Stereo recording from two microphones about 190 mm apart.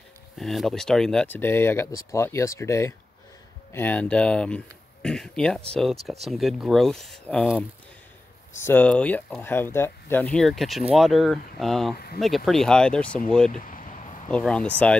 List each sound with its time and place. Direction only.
0.4 s speech: centre (ahead or behind)
8.6 s speech: 10° left (ahead or behind)
13.5 s speech: 45° left (ahead or behind)
14.3 s speech: 5° left (ahead or behind)